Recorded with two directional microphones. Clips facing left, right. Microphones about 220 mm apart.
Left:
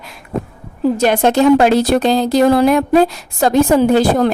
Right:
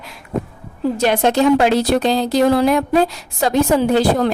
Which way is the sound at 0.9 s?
45° left (ahead or behind).